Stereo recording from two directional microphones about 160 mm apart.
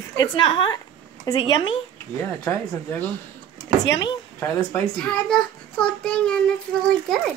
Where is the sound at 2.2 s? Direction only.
15° left (ahead or behind).